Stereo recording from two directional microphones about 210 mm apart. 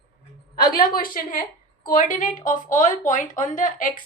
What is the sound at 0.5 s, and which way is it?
A woman's voice, 45° left (ahead or behind).